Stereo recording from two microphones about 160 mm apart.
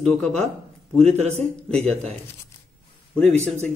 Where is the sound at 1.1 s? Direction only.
45° right (ahead or behind).